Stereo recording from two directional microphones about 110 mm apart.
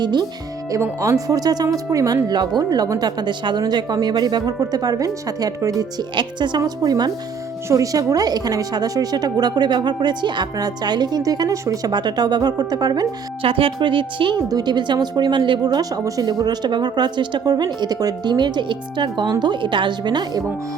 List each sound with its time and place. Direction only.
0.0 s a woman's voice: 40° right (ahead or behind)
0.7 s a woman's voice: 30° right (ahead or behind)
6.1 s a woman's voice: 45° right (ahead or behind)
13.4 s a woman's voice: 55° right (ahead or behind)